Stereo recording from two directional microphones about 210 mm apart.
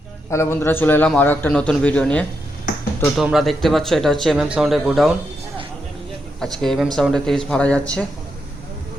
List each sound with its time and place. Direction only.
0.3 s a man's voice: 10° left (ahead or behind)
6.4 s speech: centre (ahead or behind)